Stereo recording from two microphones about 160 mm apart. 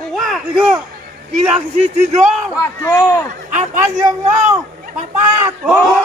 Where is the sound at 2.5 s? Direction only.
20° left (ahead or behind).